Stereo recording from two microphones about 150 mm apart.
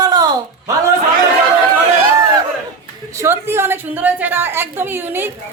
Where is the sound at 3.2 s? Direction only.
15° right (ahead or behind).